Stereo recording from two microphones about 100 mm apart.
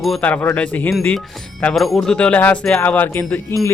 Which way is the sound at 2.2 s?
15° left (ahead or behind).